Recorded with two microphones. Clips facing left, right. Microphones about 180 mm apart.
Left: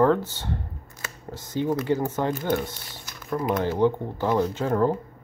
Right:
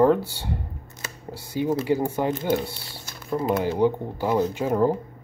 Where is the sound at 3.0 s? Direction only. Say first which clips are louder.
Right 1 dB; 25° right (ahead or behind).